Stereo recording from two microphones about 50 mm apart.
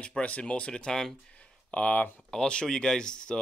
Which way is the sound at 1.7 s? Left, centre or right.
Left.